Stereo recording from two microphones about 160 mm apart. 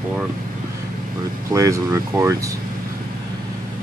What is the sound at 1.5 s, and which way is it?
Speech, 20° right (ahead or behind).